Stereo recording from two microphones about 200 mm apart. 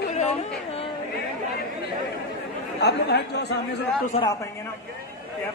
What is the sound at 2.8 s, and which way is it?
Chatter, 55° left (ahead or behind).